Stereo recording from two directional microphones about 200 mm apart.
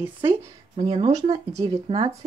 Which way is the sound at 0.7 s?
25° right (ahead or behind).